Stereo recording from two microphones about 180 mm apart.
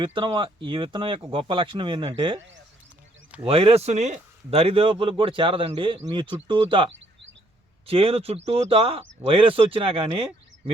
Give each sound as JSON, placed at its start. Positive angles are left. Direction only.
{"t": 0.0, "sound": "speech", "side_deg": -25}
{"t": 3.4, "sound": "speech", "side_deg": -30}